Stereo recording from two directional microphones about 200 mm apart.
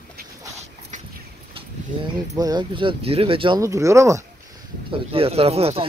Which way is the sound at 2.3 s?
20° right (ahead or behind).